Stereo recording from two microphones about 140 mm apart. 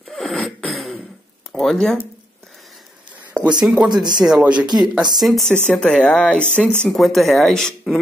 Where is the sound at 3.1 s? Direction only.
10° right (ahead or behind).